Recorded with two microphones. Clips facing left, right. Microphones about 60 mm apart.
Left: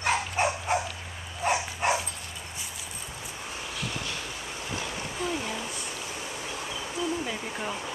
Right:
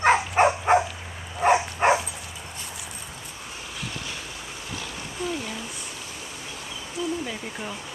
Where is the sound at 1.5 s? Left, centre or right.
Right.